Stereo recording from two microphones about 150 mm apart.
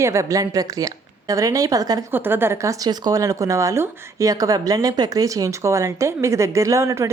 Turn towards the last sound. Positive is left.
turn(degrees=-20)  # may be behind; listen again after turning